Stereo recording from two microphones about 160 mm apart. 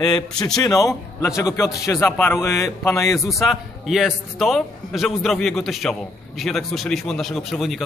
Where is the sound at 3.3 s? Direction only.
Centre (ahead or behind).